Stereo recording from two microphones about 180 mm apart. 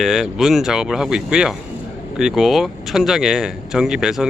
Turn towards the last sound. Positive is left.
turn(degrees=-5)  # may be behind; listen again after turning